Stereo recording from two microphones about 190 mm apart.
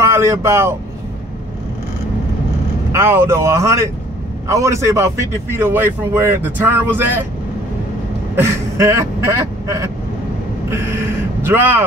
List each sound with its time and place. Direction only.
0.0 s speech: 15° right (ahead or behind)
2.9 s a man's voice: 15° right (ahead or behind)
8.4 s a man's voice: 15° right (ahead or behind)
10.7 s a sound: 15° right (ahead or behind)